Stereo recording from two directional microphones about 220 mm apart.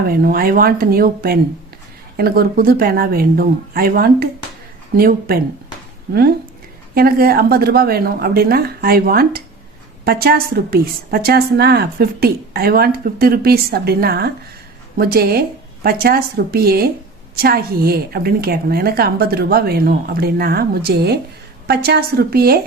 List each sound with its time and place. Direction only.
0.1 s a woman's voice: 40° right (ahead or behind)
6.9 s a woman's voice: 40° right (ahead or behind)